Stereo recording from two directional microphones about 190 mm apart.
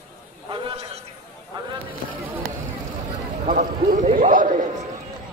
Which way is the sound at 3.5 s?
45° right (ahead or behind).